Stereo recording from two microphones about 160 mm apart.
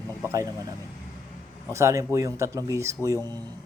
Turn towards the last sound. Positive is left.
turn(degrees=-20)  # may be behind; listen again after turning